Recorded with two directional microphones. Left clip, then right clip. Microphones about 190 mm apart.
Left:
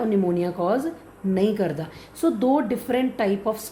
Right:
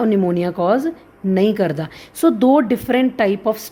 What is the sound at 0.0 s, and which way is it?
A woman's voice, 45° right (ahead or behind).